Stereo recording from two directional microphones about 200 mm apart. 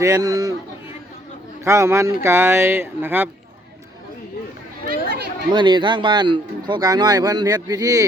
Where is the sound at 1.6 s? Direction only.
15° right (ahead or behind).